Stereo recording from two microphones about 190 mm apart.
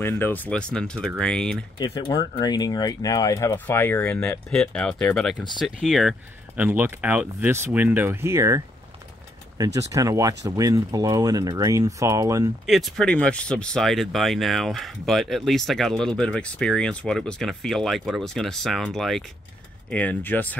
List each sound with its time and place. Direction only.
0.0 s speech: 10° left (ahead or behind)
1.8 s speech: 25° left (ahead or behind); by 8.6 s 15° right (ahead or behind)
9.8 s speech: 15° right (ahead or behind)
12.6 s speech: centre (ahead or behind)